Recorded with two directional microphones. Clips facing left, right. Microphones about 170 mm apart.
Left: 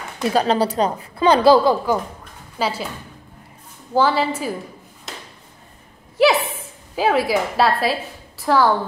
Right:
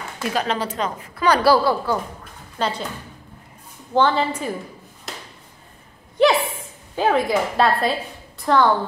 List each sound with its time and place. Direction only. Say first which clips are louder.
0.3 s a woman's voice: left 6 dB; 35° left (ahead or behind); by 2.0 s 20° left (ahead or behind)
2.6 s a woman's voice: left 1 dB; 5° left (ahead or behind)
3.9 s a woman's voice: left 1 dB; 5° left (ahead or behind)
6.2 s a woman's voice: left 1 dB; 5° left (ahead or behind)